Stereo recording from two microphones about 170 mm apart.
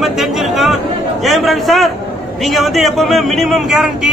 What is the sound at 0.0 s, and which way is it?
Chatter, centre (ahead or behind).